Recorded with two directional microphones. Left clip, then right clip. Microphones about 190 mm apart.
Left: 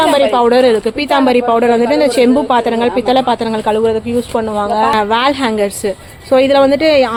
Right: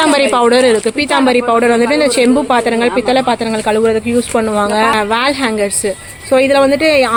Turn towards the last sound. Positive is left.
turn(degrees=5)  # may be behind; listen again after turning